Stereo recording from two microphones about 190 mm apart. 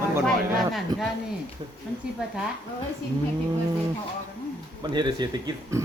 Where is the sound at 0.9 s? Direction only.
20° right (ahead or behind).